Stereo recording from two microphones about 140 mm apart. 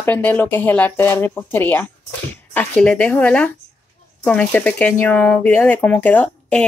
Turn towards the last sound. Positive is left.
turn(degrees=10)  # may be behind; listen again after turning